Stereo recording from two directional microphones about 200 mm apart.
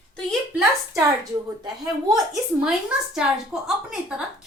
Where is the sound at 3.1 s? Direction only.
Centre (ahead or behind).